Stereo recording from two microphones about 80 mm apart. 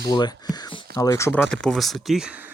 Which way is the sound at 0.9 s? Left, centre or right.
Left.